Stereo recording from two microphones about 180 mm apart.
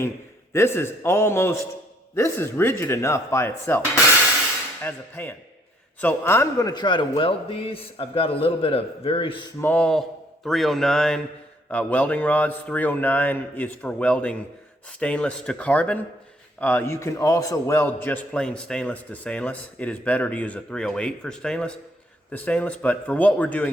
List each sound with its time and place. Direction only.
0.5 s a man's voice: 15° left (ahead or behind)
9.6 s a man's voice: 10° left (ahead or behind)